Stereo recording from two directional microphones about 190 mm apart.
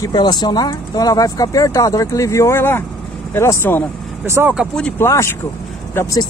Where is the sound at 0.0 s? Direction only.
20° left (ahead or behind).